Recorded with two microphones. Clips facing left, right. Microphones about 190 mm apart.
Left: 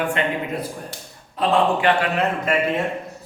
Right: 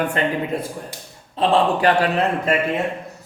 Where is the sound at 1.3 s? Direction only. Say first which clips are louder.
Right 1 dB; 35° right (ahead or behind).